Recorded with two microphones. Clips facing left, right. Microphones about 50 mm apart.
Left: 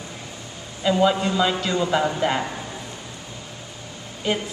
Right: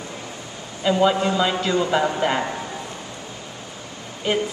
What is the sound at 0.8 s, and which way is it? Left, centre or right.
Speech, centre.